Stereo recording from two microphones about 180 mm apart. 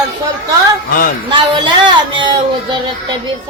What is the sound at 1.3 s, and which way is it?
Speech, 25° right (ahead or behind).